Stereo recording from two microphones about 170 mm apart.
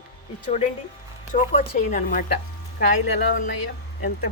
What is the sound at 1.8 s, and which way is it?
Speech, 55° left (ahead or behind).